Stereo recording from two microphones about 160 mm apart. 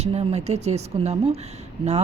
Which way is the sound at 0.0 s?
40° right (ahead or behind).